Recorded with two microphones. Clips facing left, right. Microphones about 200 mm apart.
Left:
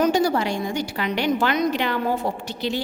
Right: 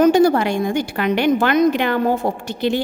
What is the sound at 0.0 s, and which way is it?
A woman's voice, 55° right (ahead or behind).